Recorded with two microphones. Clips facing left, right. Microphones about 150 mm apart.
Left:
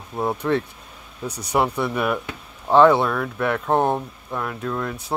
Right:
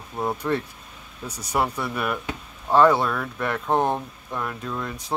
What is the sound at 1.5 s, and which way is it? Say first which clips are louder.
Speech: left 4 dB; 5° left (ahead or behind).